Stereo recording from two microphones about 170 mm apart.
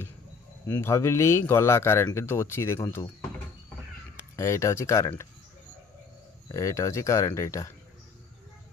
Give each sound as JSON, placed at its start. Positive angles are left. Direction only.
{"t": 0.7, "sound": "speech", "side_deg": 15}
{"t": 6.5, "sound": "speech", "side_deg": 15}